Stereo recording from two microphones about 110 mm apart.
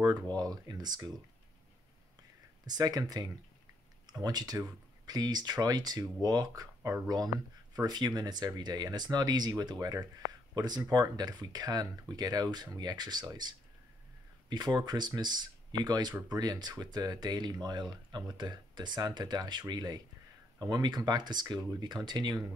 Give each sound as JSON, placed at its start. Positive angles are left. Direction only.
{"t": 0.0, "sound": "speech", "side_deg": -40}
{"t": 2.6, "sound": "speech", "side_deg": -35}